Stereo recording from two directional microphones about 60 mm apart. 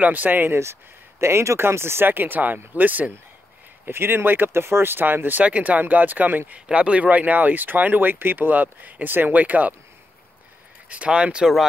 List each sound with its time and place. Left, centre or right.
0.0 s speech: right
1.2 s speech: right
3.8 s speech: right
5.4 s speech: right
6.7 s speech: centre
10.9 s speech: centre